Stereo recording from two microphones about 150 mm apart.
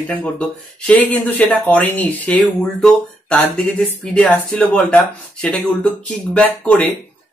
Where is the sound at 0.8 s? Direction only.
10° left (ahead or behind).